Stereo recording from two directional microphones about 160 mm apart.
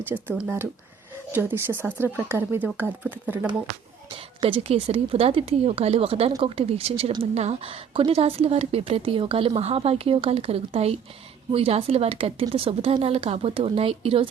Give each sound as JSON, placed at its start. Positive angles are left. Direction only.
{"t": 0.1, "sound": "speech", "side_deg": -10}
{"t": 4.4, "sound": "a woman's voice", "side_deg": -35}